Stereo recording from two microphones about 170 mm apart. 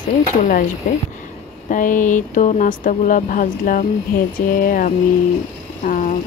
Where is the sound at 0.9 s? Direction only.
50° left (ahead or behind).